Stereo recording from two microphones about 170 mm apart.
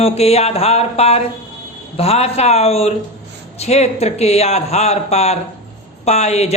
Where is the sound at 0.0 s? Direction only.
35° left (ahead or behind).